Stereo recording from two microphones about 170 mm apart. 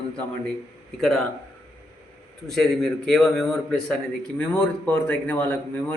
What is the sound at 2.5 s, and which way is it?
A man's voice, centre (ahead or behind).